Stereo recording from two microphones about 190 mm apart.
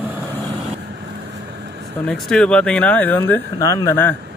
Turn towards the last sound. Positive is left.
turn(degrees=15)  # may be behind; listen again after turning